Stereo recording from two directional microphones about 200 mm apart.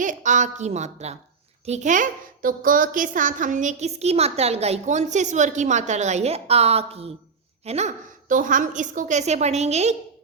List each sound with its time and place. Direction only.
0.0 s a woman's voice: 40° right (ahead or behind)